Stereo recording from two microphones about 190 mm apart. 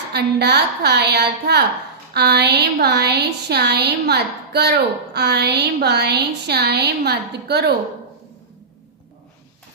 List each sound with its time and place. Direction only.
0.1 s speech: 60° right (ahead or behind)